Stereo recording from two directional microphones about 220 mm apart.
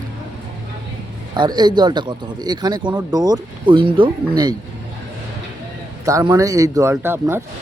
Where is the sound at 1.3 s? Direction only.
20° right (ahead or behind).